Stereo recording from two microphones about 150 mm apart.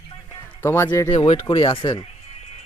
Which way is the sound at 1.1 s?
35° left (ahead or behind).